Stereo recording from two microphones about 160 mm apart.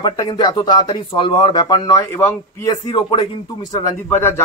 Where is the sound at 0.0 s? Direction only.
25° left (ahead or behind).